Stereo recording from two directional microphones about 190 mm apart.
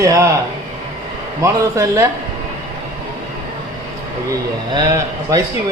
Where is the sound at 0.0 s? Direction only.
15° right (ahead or behind).